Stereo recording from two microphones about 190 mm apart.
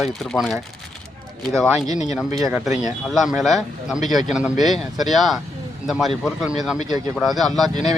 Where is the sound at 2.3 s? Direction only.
20° right (ahead or behind).